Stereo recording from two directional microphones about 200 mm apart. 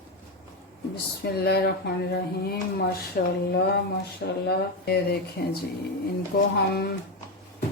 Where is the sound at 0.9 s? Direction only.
55° left (ahead or behind).